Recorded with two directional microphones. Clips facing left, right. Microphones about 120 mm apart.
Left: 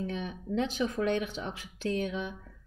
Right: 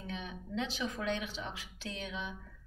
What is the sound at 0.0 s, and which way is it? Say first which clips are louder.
A woman's voice: left 7 dB; 45° left (ahead or behind).